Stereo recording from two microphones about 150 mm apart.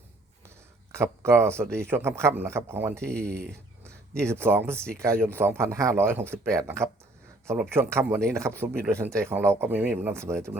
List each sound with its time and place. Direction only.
0.9 s speech: 15° right (ahead or behind)
3.0 s speech: 5° left (ahead or behind)
4.3 s speech: 15° right (ahead or behind)